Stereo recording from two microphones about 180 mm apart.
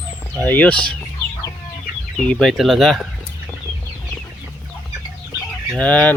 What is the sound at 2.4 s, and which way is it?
Speech, centre (ahead or behind).